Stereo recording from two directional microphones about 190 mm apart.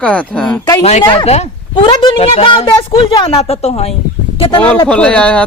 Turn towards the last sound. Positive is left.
turn(degrees=5)  # may be behind; listen again after turning